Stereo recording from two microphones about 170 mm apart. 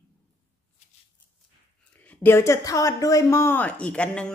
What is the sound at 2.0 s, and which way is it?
A woman's voice, 15° left (ahead or behind).